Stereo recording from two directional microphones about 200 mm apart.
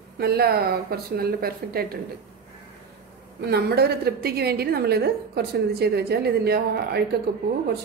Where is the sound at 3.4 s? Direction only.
55° right (ahead or behind).